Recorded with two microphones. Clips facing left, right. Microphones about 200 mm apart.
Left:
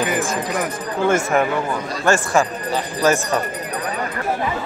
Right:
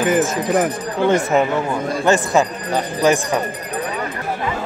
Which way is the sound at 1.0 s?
20° right (ahead or behind).